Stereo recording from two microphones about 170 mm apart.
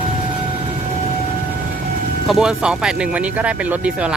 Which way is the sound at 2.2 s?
Centre (ahead or behind).